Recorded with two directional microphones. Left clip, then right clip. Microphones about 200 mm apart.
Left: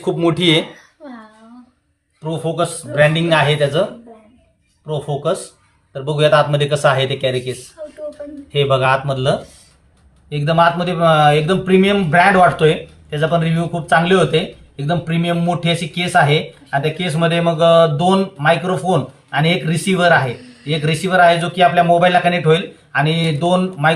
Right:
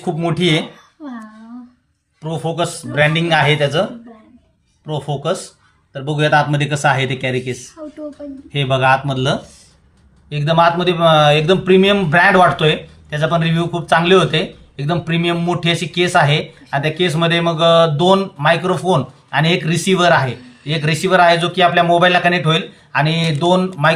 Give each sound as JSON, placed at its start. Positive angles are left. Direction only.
{"t": 0.0, "sound": "speech", "side_deg": 10}
{"t": 2.2, "sound": "speech", "side_deg": -20}
{"t": 4.9, "sound": "a man's voice", "side_deg": -15}
{"t": 6.1, "sound": "speech", "side_deg": 0}
{"t": 8.5, "sound": "speech", "side_deg": 0}
{"t": 10.2, "sound": "speech", "side_deg": -20}